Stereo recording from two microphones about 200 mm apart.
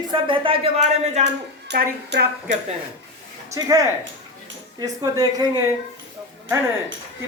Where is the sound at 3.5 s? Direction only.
20° right (ahead or behind).